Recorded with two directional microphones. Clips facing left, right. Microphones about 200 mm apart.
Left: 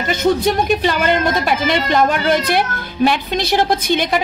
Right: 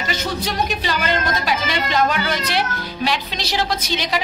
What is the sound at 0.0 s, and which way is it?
A woman's voice, 50° left (ahead or behind).